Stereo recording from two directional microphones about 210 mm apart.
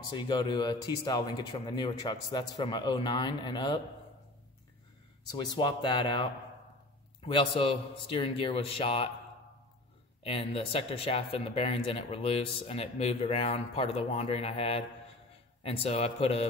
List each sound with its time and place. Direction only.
0.1 s speech: 20° left (ahead or behind)
5.3 s speech: 20° left (ahead or behind)
10.2 s speech: 25° left (ahead or behind)